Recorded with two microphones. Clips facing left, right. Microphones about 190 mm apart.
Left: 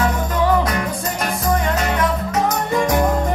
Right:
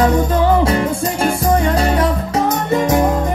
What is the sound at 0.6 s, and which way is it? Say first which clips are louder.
Music: right 6 dB; 30° right (ahead or behind).